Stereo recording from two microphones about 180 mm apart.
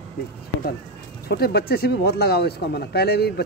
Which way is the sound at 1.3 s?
60° left (ahead or behind).